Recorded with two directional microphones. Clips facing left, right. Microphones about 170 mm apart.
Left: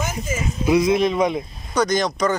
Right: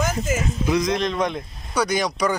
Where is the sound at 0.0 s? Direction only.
90° right.